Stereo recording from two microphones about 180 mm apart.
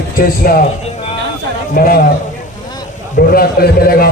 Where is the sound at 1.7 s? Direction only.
55° left (ahead or behind).